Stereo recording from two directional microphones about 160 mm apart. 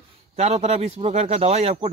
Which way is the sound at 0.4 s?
40° right (ahead or behind).